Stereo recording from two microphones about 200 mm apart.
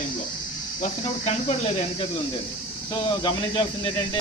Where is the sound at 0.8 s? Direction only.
35° left (ahead or behind).